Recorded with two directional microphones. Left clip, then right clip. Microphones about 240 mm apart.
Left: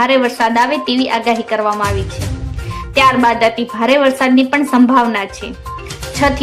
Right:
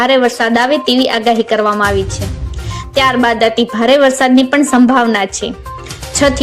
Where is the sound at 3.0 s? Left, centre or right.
Centre.